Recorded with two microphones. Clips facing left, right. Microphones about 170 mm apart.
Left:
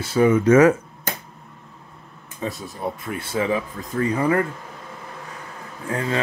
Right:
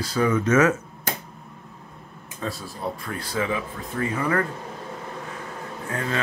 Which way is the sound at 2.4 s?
20° left (ahead or behind).